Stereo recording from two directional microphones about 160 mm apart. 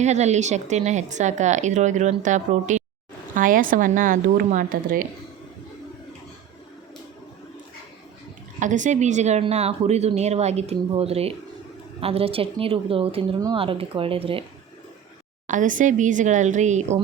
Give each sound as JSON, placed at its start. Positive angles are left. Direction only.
{"t": 0.0, "sound": "a woman's voice", "side_deg": -45}
{"t": 8.5, "sound": "speech", "side_deg": -50}
{"t": 15.4, "sound": "speech", "side_deg": -55}